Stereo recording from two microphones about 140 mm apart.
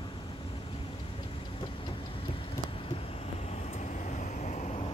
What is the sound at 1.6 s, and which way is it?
Vehicle, 35° left (ahead or behind).